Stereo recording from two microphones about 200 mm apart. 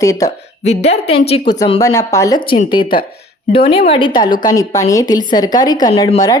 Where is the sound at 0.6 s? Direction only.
30° left (ahead or behind).